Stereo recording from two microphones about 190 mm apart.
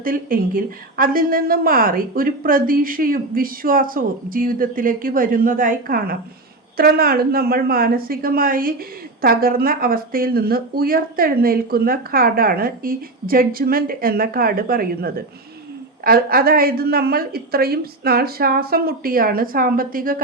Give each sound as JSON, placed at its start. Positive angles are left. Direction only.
{"t": 0.0, "sound": "a woman's voice", "side_deg": -45}